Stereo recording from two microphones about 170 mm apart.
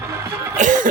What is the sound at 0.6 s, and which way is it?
Cough, 50° right (ahead or behind).